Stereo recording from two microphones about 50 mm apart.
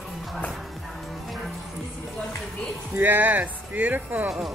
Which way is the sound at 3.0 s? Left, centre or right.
Right.